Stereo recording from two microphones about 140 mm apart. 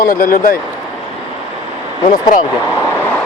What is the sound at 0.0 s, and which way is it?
Speech, 85° left.